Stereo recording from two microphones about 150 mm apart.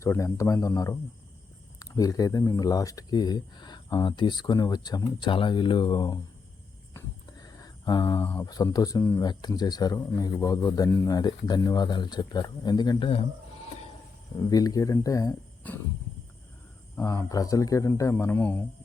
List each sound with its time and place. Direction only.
0.0 s speech: 20° left (ahead or behind)
7.3 s a sound: 25° left (ahead or behind)
8.4 s speech: 25° left (ahead or behind)
9.2 s speech: 30° left (ahead or behind)
14.5 s speech: 25° left (ahead or behind)
15.6 s a sound: 10° left (ahead or behind)
16.9 s speech: 20° left (ahead or behind)